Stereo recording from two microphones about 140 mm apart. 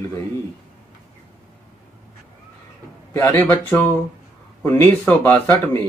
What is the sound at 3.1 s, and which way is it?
Speech, 20° left (ahead or behind).